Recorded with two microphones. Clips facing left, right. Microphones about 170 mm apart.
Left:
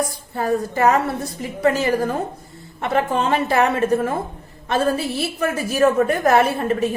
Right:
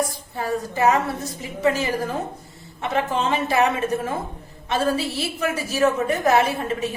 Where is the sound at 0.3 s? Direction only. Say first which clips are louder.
Left 4 dB; 50° left (ahead or behind).